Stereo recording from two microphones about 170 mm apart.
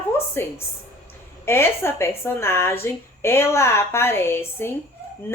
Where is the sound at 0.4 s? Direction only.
15° left (ahead or behind).